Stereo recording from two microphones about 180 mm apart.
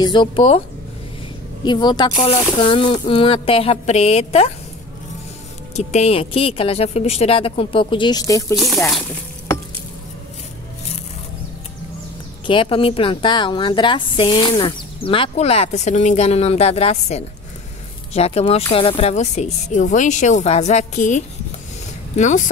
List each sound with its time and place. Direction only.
0.0 s a woman's voice: 25° left (ahead or behind)
1.6 s a woman's voice: 25° left (ahead or behind)
5.8 s a woman's voice: 40° left (ahead or behind); by 8.5 s 20° left (ahead or behind)
8.5 s speech: centre (ahead or behind)
12.4 s a woman's voice: 30° left (ahead or behind)